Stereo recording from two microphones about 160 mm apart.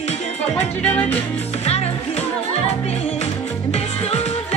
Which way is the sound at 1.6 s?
40° left (ahead or behind).